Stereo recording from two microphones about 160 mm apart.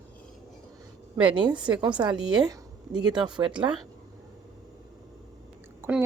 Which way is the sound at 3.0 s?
30° right (ahead or behind).